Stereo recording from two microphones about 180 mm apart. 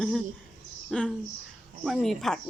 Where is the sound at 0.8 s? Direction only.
5° left (ahead or behind).